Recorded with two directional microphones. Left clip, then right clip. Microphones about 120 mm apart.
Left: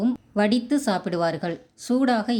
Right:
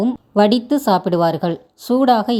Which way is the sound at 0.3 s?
40° right (ahead or behind).